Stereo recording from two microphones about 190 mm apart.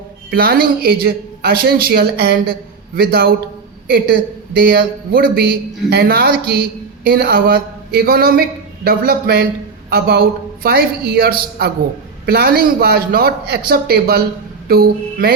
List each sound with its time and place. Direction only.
0.3 s speech: 50° right (ahead or behind)
14.7 s mantra: 55° right (ahead or behind)